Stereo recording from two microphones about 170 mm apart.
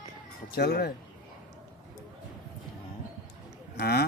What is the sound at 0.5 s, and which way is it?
Speech, 65° left (ahead or behind).